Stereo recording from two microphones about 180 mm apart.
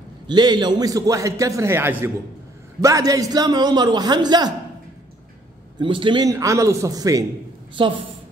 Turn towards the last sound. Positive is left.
turn(degrees=-30)  # may be behind; listen again after turning